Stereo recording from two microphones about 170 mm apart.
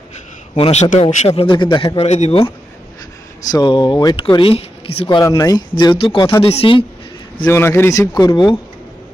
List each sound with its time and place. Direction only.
0.5 s a man's voice: 40° left (ahead or behind)
1.4 s a man's voice: 30° left (ahead or behind)
3.4 s speech: 25° left (ahead or behind)
5.0 s a man's voice: 20° left (ahead or behind)
7.4 s speech: 15° left (ahead or behind)